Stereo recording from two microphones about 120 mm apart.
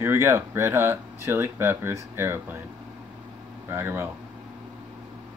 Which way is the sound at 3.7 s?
20° right (ahead or behind).